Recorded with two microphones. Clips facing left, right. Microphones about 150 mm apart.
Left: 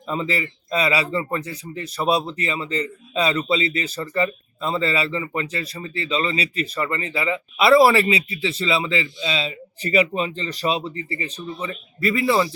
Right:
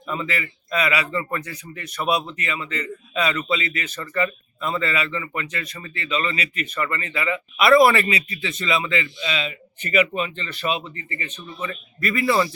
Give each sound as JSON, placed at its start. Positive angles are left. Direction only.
{"t": 0.1, "sound": "speech", "side_deg": 30}